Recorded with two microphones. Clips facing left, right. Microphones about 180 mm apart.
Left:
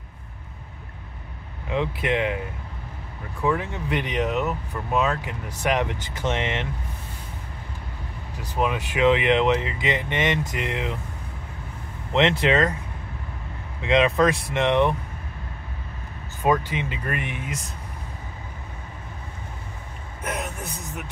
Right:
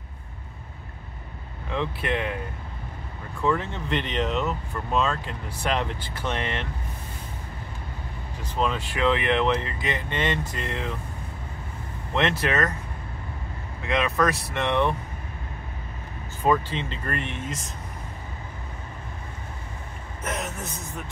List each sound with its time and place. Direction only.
1.7 s speech: 15° left (ahead or behind)
3.4 s speech: 15° left (ahead or behind)
8.4 s speech: 10° left (ahead or behind)
12.1 s speech: 20° left (ahead or behind)
13.8 s speech: 20° left (ahead or behind)
16.6 s speech: 10° left (ahead or behind)